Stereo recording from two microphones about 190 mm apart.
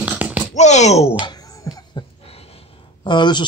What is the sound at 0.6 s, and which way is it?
Speech, 35° left (ahead or behind).